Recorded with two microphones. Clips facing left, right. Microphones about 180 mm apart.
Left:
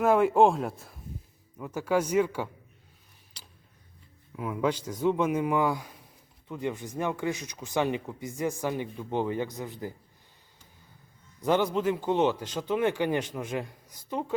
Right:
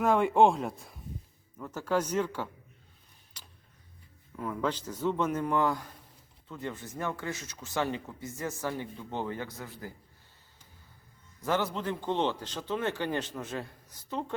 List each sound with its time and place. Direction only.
0.0 s speech: 5° left (ahead or behind)
4.4 s speech: 10° left (ahead or behind)
11.4 s speech: 15° left (ahead or behind)